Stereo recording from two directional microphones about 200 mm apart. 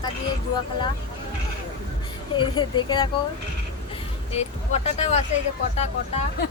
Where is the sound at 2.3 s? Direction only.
25° left (ahead or behind).